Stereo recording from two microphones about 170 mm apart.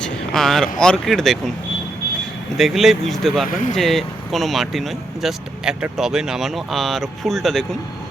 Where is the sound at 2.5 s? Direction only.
Centre (ahead or behind).